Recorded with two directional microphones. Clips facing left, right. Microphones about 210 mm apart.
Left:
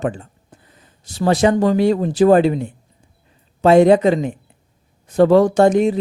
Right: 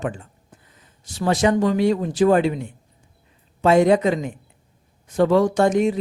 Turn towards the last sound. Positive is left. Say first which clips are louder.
# left 4 dB
turn(degrees=35)  # may be behind; listen again after turning